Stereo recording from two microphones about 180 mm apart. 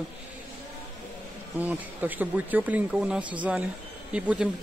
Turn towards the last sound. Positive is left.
turn(degrees=-5)  # may be behind; listen again after turning